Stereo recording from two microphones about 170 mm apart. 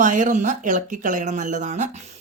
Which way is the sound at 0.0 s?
50° right (ahead or behind).